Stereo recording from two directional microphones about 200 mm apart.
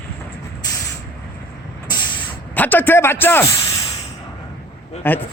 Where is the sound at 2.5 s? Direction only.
10° left (ahead or behind).